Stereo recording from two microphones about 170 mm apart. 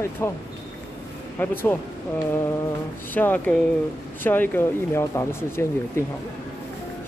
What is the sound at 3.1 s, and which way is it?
Speech, 10° left (ahead or behind).